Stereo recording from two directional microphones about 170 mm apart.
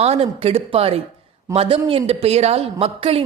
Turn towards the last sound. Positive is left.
turn(degrees=-35)  # may be behind; listen again after turning